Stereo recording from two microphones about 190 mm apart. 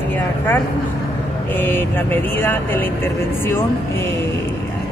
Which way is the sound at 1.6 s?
10° left (ahead or behind).